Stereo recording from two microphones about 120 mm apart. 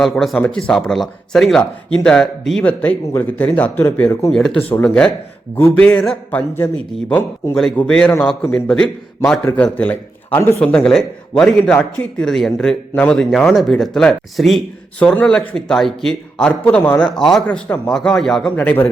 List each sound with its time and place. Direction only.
0.0 s a man's voice: centre (ahead or behind)
4.3 s a man's voice: 5° left (ahead or behind)
7.5 s a man's voice: 5° left (ahead or behind)
18.5 s a man's voice: 15° left (ahead or behind)